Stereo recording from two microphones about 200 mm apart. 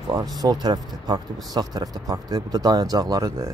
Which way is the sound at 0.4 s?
20° right (ahead or behind).